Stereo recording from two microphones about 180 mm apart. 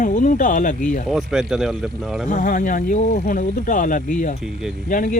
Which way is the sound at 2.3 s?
50° left (ahead or behind).